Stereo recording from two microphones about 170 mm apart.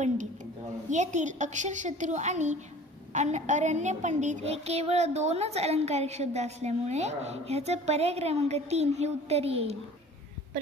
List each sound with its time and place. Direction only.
0.8 s a woman's voice: 45° right (ahead or behind)